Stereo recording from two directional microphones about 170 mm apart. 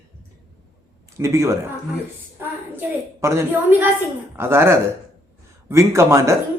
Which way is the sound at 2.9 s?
15° right (ahead or behind).